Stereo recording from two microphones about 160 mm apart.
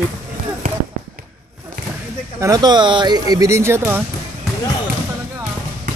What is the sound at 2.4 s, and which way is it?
Speech, 25° right (ahead or behind).